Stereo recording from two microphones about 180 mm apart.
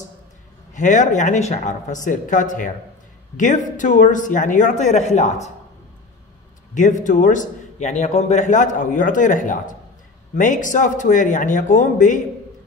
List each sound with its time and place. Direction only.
0.7 s a man's voice: 45° left (ahead or behind)
6.7 s a man's voice: 45° left (ahead or behind)